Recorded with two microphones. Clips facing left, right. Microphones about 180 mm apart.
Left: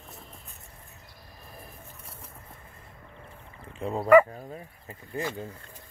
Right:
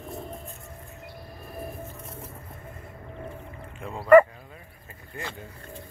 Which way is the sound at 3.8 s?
35° left (ahead or behind).